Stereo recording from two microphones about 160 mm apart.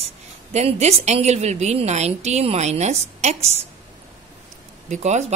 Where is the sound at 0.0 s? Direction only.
40° right (ahead or behind).